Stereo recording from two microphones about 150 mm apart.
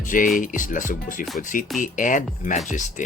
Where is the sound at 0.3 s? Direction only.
60° left (ahead or behind).